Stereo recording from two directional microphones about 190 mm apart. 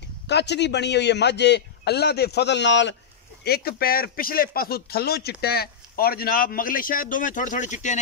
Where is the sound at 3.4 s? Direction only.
55° left (ahead or behind).